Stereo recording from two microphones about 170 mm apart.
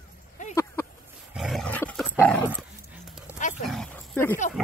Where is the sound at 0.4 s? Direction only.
45° left (ahead or behind).